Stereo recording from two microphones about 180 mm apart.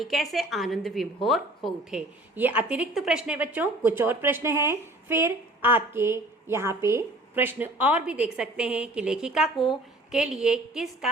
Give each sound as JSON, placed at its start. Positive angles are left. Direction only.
{"t": 0.0, "sound": "a woman's voice", "side_deg": 0}